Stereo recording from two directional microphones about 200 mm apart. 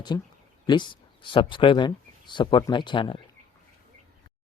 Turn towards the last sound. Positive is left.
turn(degrees=25)  # may be behind; listen again after turning